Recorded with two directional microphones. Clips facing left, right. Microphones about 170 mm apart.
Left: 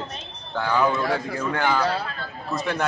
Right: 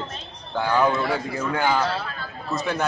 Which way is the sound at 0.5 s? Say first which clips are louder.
Right 1 dB; 15° right (ahead or behind).